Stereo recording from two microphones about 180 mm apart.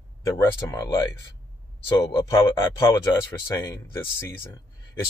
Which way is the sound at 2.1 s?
15° left (ahead or behind).